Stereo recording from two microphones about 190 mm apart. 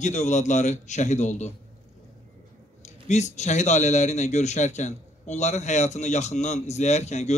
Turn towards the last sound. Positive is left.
turn(degrees=35)  # may be behind; listen again after turning